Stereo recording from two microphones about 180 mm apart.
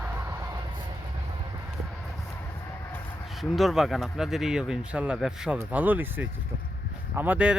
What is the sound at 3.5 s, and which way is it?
Speech, centre (ahead or behind).